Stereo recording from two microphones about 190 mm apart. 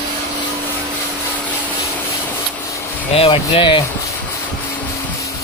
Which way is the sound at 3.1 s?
30° left (ahead or behind).